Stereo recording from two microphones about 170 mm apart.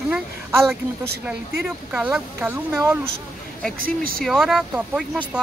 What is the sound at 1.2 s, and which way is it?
Speech, 5° right (ahead or behind).